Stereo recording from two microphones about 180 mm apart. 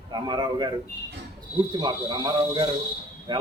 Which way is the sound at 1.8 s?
25° right (ahead or behind).